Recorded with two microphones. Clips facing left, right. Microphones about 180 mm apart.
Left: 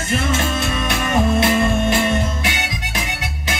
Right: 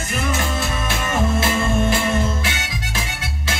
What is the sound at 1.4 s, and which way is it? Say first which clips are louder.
Music: left 3 dB; 20° left (ahead or behind).